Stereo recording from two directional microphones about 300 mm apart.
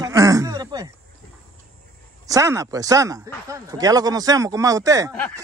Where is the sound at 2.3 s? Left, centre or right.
Centre.